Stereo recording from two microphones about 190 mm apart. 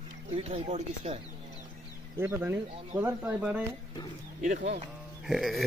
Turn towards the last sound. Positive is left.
turn(degrees=0)  # may be behind; listen again after turning